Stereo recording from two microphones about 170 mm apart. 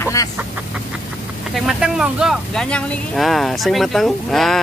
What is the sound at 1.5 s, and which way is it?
Speech, centre (ahead or behind).